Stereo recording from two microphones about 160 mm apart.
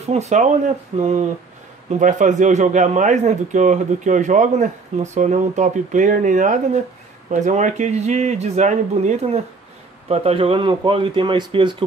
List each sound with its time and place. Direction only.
0.0 s a man's voice: 40° right (ahead or behind)